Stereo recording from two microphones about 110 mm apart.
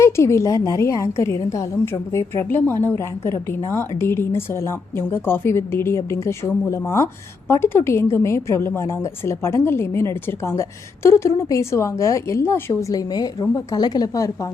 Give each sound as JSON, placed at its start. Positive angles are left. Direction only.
{"t": 0.0, "sound": "a woman's voice", "side_deg": 25}
{"t": 12.9, "sound": "a woman's voice", "side_deg": 35}